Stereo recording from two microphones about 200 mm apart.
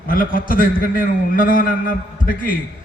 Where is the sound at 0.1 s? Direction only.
45° left (ahead or behind).